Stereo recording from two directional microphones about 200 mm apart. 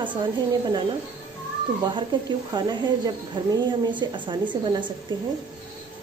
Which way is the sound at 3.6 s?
25° right (ahead or behind).